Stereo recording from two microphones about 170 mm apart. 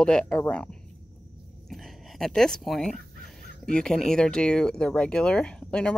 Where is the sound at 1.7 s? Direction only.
Centre (ahead or behind).